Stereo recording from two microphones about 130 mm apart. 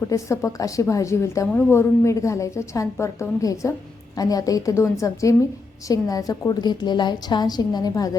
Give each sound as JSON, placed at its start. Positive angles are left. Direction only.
{"t": 0.1, "sound": "a woman's voice", "side_deg": 25}